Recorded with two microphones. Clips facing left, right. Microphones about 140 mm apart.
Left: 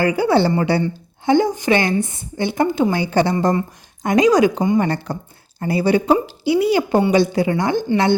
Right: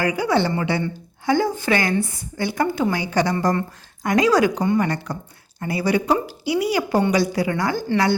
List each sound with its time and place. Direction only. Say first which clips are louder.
0.0 s a woman's voice: left 4 dB; 30° left (ahead or behind)
1.2 s a woman's voice: left 4 dB; 20° left (ahead or behind)
3.3 s a woman's voice: left 3 dB; 15° left (ahead or behind)
4.8 s a woman's voice: left 3 dB; 30° left (ahead or behind)